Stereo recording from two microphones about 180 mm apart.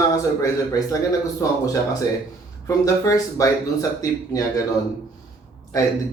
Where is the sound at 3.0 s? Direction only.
20° left (ahead or behind).